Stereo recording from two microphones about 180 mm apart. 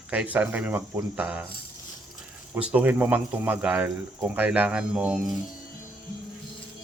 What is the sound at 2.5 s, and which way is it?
Speech, 5° right (ahead or behind).